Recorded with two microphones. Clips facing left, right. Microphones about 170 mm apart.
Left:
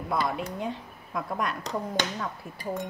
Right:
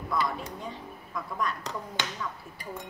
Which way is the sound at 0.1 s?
65° left (ahead or behind).